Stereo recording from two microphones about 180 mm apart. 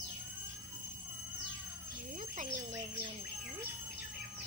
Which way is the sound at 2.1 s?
45° right (ahead or behind).